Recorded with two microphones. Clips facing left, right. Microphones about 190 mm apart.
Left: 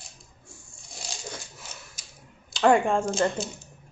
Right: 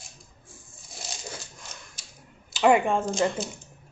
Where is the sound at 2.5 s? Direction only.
5° right (ahead or behind).